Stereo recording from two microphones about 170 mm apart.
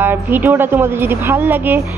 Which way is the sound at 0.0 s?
10° right (ahead or behind).